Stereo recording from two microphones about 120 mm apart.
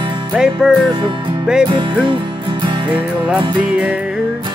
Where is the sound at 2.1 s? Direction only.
45° right (ahead or behind).